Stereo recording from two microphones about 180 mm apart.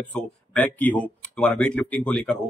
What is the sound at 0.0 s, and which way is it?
Speech, 10° left (ahead or behind).